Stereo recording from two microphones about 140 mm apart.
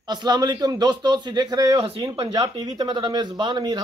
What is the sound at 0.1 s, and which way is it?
A man's voice, 30° right (ahead or behind).